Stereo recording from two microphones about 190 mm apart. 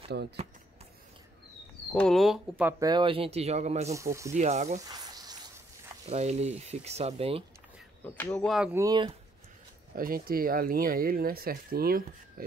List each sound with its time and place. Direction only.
1.9 s speech: 5° left (ahead or behind)
2.9 s speech: 25° right (ahead or behind)
3.9 s speech: 15° right (ahead or behind)
4.3 s speech: 35° right (ahead or behind)
4.8 s a sound: 20° right (ahead or behind)
6.0 s speech: 35° right (ahead or behind)
8.0 s speech: 10° left (ahead or behind)
8.7 s speech: 20° right (ahead or behind)
9.9 s speech: 50° right (ahead or behind)